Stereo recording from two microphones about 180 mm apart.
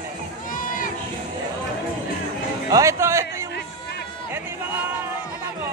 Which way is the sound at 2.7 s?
20° right (ahead or behind).